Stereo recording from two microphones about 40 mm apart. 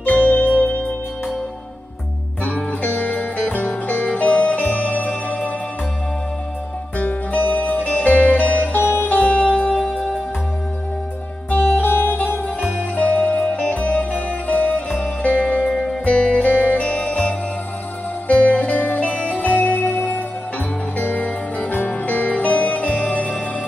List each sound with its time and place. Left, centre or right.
0.1 s music: left
2.4 s music: left
7.0 s music: left
11.8 s music: left
12.9 s music: left
16.1 s music: left
16.3 s music: left
19.7 s music: left
21.0 s music: left